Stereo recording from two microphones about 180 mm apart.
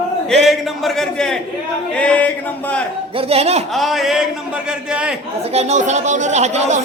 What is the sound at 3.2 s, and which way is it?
Speech, 35° right (ahead or behind).